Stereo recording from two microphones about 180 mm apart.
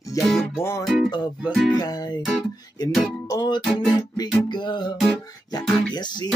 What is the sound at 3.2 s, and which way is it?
Music, 20° left (ahead or behind).